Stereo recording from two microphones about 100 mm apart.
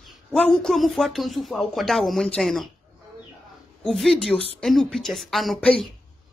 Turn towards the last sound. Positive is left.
turn(degrees=0)  # may be behind; listen again after turning